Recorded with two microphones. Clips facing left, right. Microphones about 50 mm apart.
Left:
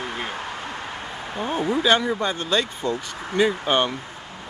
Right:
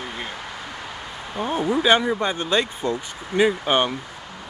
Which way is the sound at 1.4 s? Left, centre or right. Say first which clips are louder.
Right 1 dB; centre.